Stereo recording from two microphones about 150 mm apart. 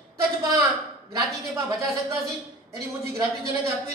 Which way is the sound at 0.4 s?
25° right (ahead or behind).